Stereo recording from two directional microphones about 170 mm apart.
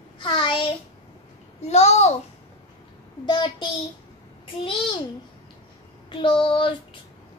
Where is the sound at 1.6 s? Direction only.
40° left (ahead or behind).